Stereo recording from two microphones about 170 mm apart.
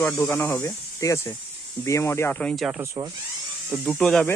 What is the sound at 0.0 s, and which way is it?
Speech, 10° left (ahead or behind).